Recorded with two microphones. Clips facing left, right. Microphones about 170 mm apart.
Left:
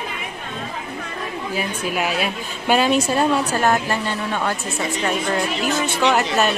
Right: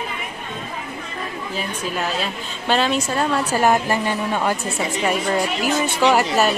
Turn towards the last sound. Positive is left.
turn(degrees=-5)  # may be behind; listen again after turning